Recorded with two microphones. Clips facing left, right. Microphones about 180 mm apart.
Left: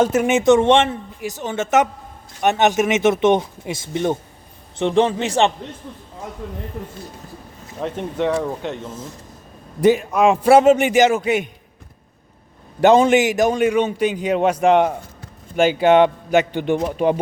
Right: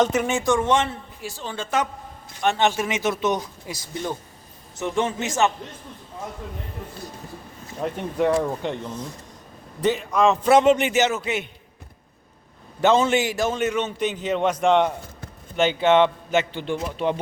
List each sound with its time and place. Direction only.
0.3 s a man's voice: 20° left (ahead or behind)
7.8 s speech: 5° right (ahead or behind)
9.8 s a man's voice: 10° left (ahead or behind)
12.8 s a man's voice: 15° left (ahead or behind)
16.8 s speech: 50° left (ahead or behind)